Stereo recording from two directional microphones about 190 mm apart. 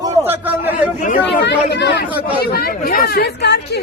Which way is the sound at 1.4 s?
65° left (ahead or behind).